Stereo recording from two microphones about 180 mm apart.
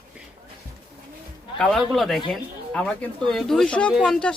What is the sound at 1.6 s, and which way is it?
Speech, centre (ahead or behind).